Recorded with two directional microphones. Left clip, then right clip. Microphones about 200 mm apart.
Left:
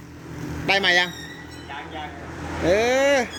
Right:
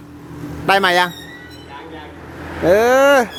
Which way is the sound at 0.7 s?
35° right (ahead or behind).